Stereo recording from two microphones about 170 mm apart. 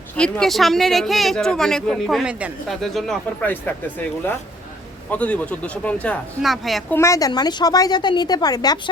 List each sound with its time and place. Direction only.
0.2 s speech: 5° left (ahead or behind)
6.9 s a woman's voice: 15° left (ahead or behind)